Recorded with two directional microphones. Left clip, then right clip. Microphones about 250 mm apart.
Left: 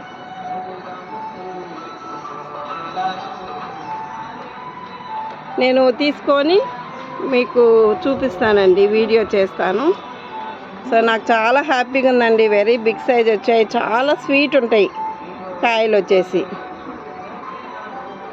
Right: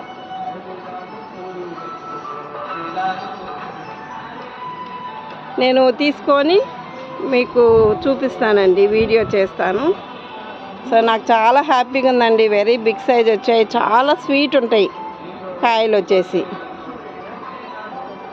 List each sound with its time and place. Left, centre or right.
2.6 s music: right
5.5 s a woman's voice: centre